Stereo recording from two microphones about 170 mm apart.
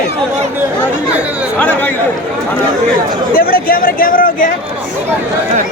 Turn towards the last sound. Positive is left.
turn(degrees=55)  # may be behind; listen again after turning